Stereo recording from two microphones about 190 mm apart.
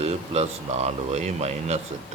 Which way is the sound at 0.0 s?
35° right (ahead or behind).